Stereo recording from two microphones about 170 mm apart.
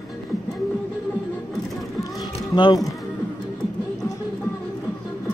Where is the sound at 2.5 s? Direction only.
25° left (ahead or behind).